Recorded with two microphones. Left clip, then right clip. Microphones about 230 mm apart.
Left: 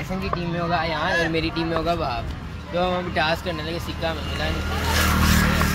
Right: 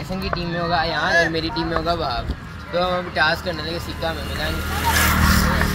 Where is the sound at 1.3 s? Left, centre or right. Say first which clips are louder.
Right 1 dB; left.